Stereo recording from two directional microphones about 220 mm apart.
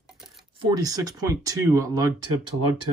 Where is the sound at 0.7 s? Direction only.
15° right (ahead or behind).